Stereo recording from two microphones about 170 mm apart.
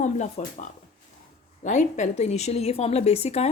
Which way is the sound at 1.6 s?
45° left (ahead or behind).